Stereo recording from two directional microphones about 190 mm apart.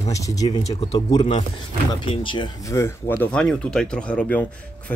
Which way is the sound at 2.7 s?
10° left (ahead or behind).